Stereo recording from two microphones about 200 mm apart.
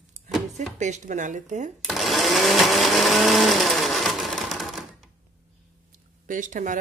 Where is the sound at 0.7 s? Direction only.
35° right (ahead or behind).